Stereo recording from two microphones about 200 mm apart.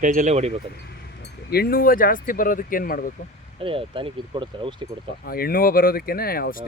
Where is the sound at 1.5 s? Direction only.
50° left (ahead or behind).